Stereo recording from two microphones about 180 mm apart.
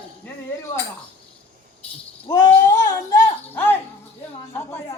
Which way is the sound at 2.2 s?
20° left (ahead or behind).